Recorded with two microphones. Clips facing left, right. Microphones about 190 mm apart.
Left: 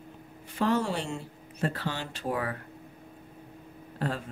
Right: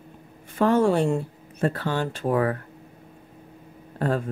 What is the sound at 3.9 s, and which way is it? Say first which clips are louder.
Speech: right 8 dB; 50° right (ahead or behind).